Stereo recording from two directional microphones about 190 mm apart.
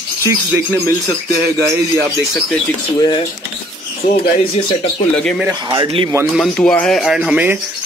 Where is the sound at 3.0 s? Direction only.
25° left (ahead or behind).